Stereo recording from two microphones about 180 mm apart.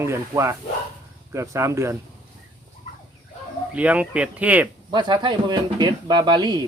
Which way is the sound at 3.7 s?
5° right (ahead or behind).